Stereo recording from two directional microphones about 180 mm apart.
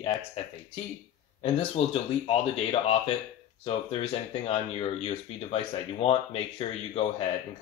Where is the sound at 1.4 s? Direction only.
35° left (ahead or behind).